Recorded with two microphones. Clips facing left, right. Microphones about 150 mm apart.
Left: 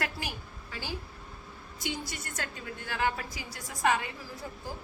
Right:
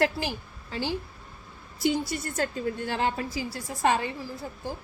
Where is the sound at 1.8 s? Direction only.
35° right (ahead or behind).